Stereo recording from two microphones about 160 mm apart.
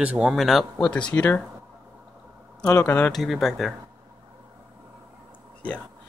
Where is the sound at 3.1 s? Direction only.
Centre (ahead or behind).